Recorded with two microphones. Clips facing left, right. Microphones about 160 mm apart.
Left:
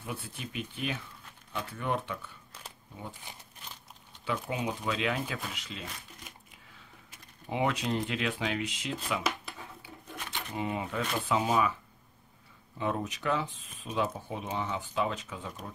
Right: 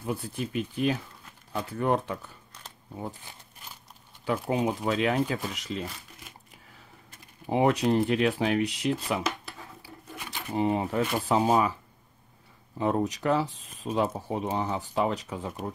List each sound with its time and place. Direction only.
0.0 s speech: 40° right (ahead or behind)
4.2 s speech: 40° right (ahead or behind)
7.4 s speech: 40° right (ahead or behind)
10.5 s speech: 35° right (ahead or behind)
12.7 s speech: 35° right (ahead or behind)